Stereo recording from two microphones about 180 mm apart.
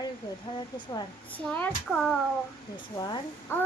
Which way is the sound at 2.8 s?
25° left (ahead or behind).